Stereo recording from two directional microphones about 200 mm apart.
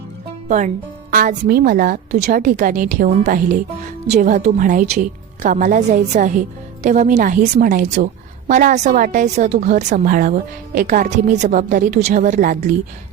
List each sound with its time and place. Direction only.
0.4 s a woman's voice: 40° right (ahead or behind)